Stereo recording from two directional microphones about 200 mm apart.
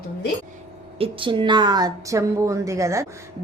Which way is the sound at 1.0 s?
25° right (ahead or behind).